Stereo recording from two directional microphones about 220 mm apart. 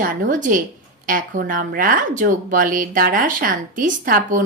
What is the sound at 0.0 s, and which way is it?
Speech, 40° right (ahead or behind).